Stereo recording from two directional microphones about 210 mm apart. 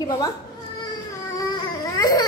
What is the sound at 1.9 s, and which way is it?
Baby cry, 15° left (ahead or behind).